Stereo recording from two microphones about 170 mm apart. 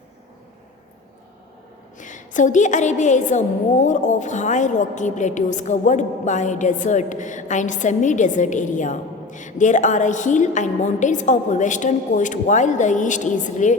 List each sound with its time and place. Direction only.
2.0 s a woman's voice: 50° left (ahead or behind)